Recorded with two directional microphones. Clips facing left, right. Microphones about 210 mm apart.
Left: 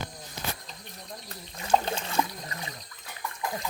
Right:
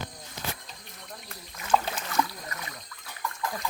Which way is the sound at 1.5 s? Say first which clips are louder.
Left 1 dB; 30° left (ahead or behind).